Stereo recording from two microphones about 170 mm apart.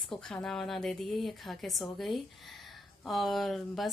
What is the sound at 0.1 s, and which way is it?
Speech, 5° left (ahead or behind).